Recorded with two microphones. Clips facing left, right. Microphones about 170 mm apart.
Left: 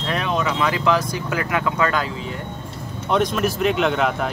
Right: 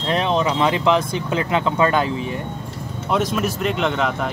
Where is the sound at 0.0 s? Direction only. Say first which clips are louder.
Right 3 dB; 30° right (ahead or behind).